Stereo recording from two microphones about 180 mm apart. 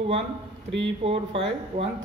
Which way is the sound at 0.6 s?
85° right.